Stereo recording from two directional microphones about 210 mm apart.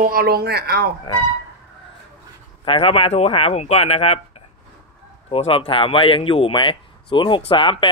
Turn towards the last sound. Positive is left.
turn(degrees=25)  # may be behind; listen again after turning